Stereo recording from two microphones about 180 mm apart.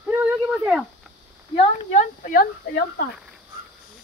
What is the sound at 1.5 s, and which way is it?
Speech, 45° left (ahead or behind).